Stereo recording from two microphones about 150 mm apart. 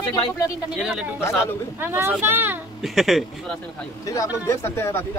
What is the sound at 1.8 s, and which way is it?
Speech, 15° right (ahead or behind).